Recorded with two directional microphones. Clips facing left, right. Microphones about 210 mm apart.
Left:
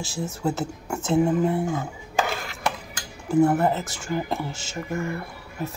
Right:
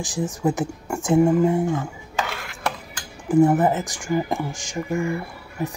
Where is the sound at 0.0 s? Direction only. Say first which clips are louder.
Right 4 dB; 15° right (ahead or behind).